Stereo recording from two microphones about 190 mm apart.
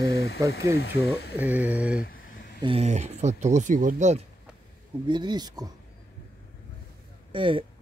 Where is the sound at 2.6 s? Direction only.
30° right (ahead or behind).